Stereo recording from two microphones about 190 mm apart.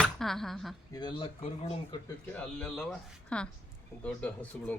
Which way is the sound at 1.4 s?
35° left (ahead or behind).